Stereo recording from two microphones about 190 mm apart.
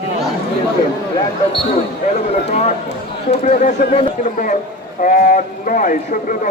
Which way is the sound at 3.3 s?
40° left (ahead or behind).